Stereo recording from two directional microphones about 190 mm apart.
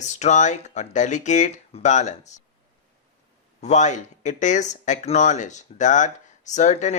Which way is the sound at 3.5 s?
40° left (ahead or behind).